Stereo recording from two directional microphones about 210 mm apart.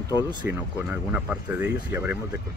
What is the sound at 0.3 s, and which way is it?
Speech, 20° right (ahead or behind).